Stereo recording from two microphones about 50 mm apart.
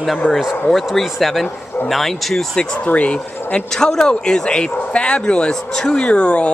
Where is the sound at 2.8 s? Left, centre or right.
Left.